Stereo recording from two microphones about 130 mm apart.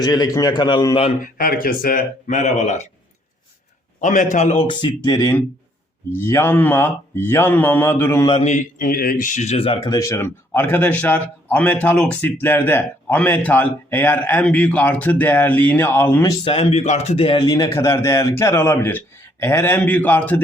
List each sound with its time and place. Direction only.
0.0 s a man's voice: 30° left (ahead or behind)
1.2 s speech: 90° left; by 2.9 s 60° left (ahead or behind)
4.0 s a man's voice: 75° left (ahead or behind)
4.7 s a man's voice: 35° left (ahead or behind)
6.1 s a man's voice: 20° left (ahead or behind)
8.4 s a man's voice: 80° left; by 9.9 s 45° left (ahead or behind)
9.9 s a man's voice: 25° left (ahead or behind)
16.4 s speech: 45° left (ahead or behind)
17.5 s a man's voice: 25° left (ahead or behind)